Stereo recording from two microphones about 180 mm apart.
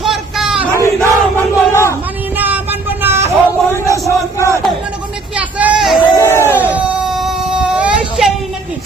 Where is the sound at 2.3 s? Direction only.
10° right (ahead or behind).